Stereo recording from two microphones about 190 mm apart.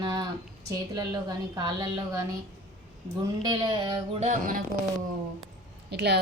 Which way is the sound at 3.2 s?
20° right (ahead or behind).